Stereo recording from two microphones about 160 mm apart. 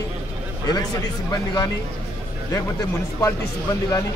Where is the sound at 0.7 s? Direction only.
25° left (ahead or behind).